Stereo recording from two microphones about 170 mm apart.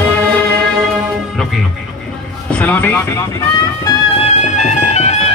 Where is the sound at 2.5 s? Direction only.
10° left (ahead or behind).